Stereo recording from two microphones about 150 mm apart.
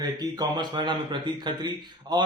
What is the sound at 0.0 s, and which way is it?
Speech, 25° right (ahead or behind).